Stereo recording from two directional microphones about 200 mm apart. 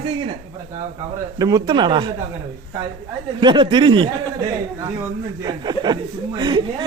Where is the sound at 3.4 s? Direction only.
25° right (ahead or behind).